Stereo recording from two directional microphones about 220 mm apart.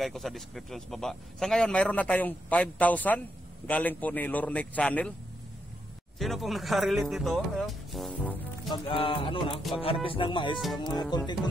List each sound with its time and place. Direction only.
0.0 s speech: centre (ahead or behind)
6.1 s speech: centre (ahead or behind)
8.8 s speech: 25° left (ahead or behind)